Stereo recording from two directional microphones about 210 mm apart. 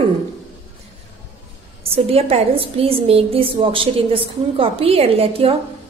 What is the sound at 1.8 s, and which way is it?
A woman's voice, 30° right (ahead or behind).